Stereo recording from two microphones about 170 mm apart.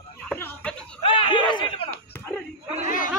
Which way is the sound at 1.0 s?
25° left (ahead or behind).